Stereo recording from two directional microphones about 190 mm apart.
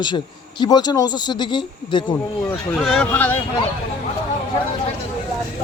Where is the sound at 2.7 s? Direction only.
Centre (ahead or behind).